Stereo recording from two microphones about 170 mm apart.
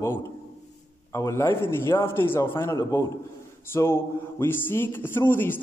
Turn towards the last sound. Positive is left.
turn(degrees=10)  # may be behind; listen again after turning